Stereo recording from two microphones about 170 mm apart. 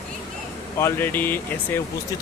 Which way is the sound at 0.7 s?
15° left (ahead or behind).